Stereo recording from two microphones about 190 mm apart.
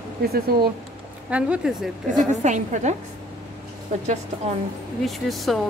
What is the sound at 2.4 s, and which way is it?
Speech, 40° right (ahead or behind).